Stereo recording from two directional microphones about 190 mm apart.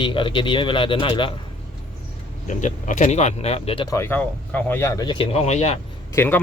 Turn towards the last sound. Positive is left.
turn(degrees=10)  # may be behind; listen again after turning